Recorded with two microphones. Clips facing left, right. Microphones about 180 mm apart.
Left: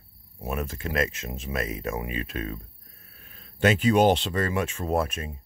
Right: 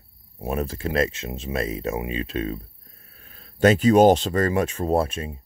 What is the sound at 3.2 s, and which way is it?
Speech, 40° right (ahead or behind).